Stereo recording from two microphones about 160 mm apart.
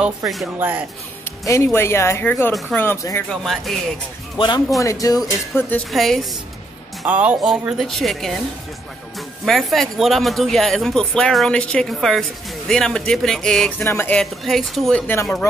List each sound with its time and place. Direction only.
0.0 s speech: centre (ahead or behind)
0.6 s speech: 10° right (ahead or behind)
1.4 s speech: 20° left (ahead or behind)
3.3 s speech: centre (ahead or behind)
4.4 s speech: 35° left (ahead or behind)
4.7 s speech: 20° left (ahead or behind)
5.9 s speech: centre (ahead or behind)
9.4 s speech: centre (ahead or behind)